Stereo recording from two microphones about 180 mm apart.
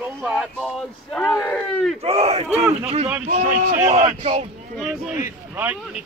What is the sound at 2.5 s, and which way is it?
Speech, 10° right (ahead or behind).